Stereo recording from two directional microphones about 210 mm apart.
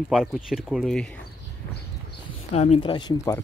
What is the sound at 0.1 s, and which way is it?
Speech, centre (ahead or behind).